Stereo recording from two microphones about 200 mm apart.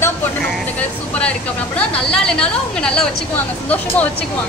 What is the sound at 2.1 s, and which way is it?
Speech, 5° left (ahead or behind).